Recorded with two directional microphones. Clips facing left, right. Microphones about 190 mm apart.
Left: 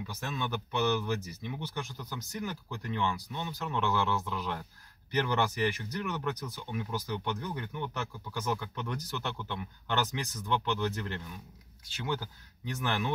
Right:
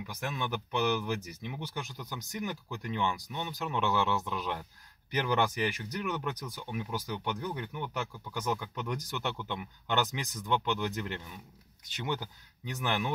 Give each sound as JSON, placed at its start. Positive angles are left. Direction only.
{"t": 0.0, "sound": "speech", "side_deg": -15}